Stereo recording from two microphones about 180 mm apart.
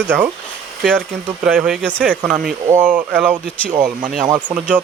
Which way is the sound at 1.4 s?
5° right (ahead or behind).